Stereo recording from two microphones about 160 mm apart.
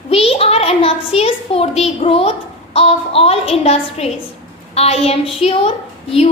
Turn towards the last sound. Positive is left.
turn(degrees=40)  # may be behind; listen again after turning